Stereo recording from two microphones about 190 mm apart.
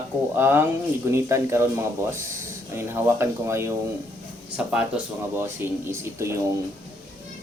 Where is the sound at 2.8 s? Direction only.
10° right (ahead or behind).